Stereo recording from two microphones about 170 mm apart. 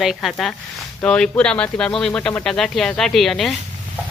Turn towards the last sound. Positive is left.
turn(degrees=0)  # may be behind; listen again after turning